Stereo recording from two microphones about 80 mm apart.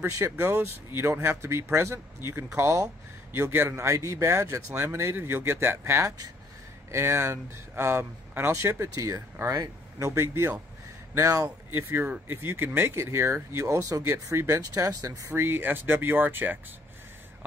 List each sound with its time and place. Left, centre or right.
0.0 s speech: right
11.4 s speech: right
14.0 s speech: right
15.2 s speech: right